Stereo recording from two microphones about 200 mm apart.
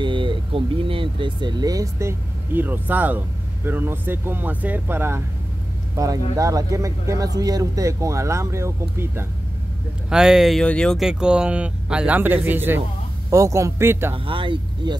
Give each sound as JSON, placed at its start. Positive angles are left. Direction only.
{"t": 0.0, "sound": "speech", "side_deg": -25}
{"t": 6.3, "sound": "speech", "side_deg": -15}
{"t": 14.1, "sound": "speech", "side_deg": -25}